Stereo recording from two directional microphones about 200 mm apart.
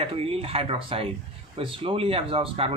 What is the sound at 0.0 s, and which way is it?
Speech, 30° right (ahead or behind).